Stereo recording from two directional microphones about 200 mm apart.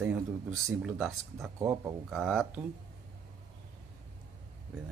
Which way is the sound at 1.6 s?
15° right (ahead or behind).